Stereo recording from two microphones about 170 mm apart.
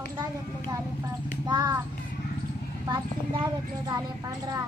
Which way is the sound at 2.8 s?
25° right (ahead or behind).